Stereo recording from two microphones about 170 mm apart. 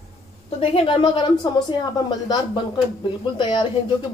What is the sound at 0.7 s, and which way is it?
A woman's voice, 30° left (ahead or behind).